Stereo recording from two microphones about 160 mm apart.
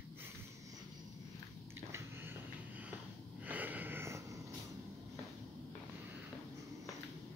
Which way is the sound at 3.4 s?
10° right (ahead or behind).